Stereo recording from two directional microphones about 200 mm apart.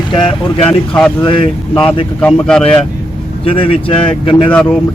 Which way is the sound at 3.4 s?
25° left (ahead or behind).